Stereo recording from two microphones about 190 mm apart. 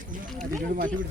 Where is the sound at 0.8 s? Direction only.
45° right (ahead or behind).